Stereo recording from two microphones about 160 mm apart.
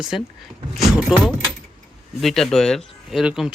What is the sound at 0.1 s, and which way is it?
Speech, centre (ahead or behind).